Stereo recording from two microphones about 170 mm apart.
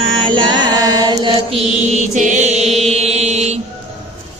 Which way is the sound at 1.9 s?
45° right (ahead or behind).